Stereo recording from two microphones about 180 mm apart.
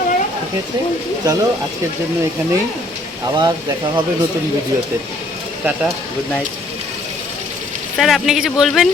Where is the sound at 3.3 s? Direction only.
25° right (ahead or behind).